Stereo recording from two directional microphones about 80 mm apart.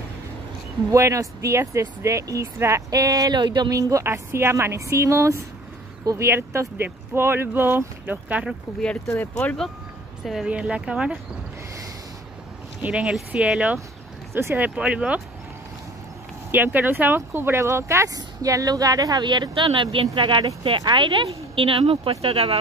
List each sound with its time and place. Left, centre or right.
0.9 s speech: right
3.3 s speech: right
3.7 s speech: right; by 8.5 s centre
8.8 s speech: centre
9.1 s speech: left
10.2 s speech: centre
10.5 s speech: centre
12.8 s speech: centre
16.5 s speech: right